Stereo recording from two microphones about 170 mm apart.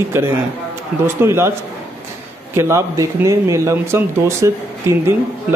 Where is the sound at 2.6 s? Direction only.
15° right (ahead or behind).